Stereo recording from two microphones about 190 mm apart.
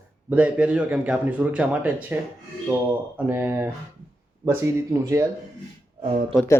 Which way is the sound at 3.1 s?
10° right (ahead or behind).